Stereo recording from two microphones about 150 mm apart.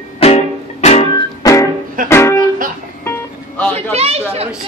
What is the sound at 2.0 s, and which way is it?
Speech, 20° left (ahead or behind).